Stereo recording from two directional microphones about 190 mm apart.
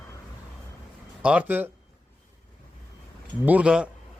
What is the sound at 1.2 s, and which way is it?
Speech, 10° right (ahead or behind).